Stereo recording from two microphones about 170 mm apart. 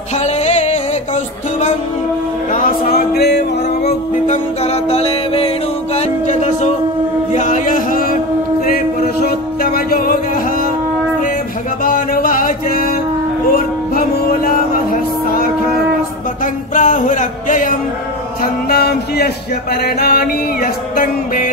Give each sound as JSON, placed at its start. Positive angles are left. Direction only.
{"t": 0.2, "sound": "music", "side_deg": 40}
{"t": 2.5, "sound": "music", "side_deg": 60}
{"t": 4.3, "sound": "music", "side_deg": 40}
{"t": 9.6, "sound": "music", "side_deg": 60}
{"t": 11.8, "sound": "music", "side_deg": 55}
{"t": 16.7, "sound": "music", "side_deg": 50}
{"t": 18.4, "sound": "music", "side_deg": 65}